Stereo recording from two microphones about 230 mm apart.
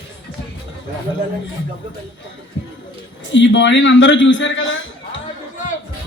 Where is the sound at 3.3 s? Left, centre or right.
Left.